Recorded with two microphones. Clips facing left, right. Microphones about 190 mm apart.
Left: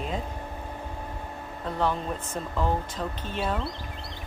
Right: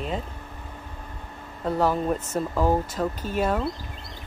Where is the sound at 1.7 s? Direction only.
40° right (ahead or behind).